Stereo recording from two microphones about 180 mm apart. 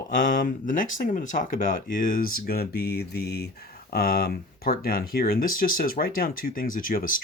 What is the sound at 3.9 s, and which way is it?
Speech, 55° left (ahead or behind).